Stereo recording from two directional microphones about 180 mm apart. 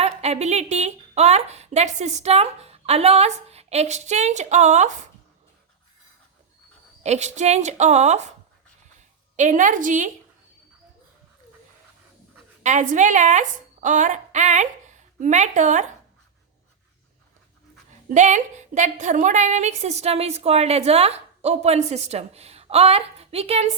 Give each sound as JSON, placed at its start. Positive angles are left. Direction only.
{"t": 0.0, "sound": "a woman's voice", "side_deg": -35}
{"t": 7.0, "sound": "a woman's voice", "side_deg": -40}
{"t": 9.3, "sound": "a woman's voice", "side_deg": -40}
{"t": 12.6, "sound": "a woman's voice", "side_deg": -45}
{"t": 18.1, "sound": "a woman's voice", "side_deg": -40}